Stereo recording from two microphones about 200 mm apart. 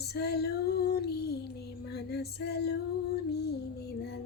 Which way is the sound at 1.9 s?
55° left (ahead or behind).